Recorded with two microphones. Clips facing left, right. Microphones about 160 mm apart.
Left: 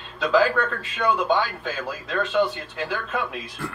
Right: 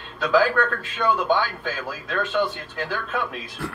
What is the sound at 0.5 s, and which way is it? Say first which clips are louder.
A man's voice: right 2 dB; centre (ahead or behind).